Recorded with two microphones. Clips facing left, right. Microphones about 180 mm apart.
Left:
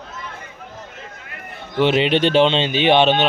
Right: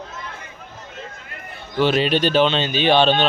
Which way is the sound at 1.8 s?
20° left (ahead or behind).